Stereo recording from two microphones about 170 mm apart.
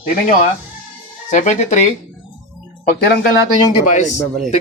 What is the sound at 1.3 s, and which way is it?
Speech, 45° left (ahead or behind).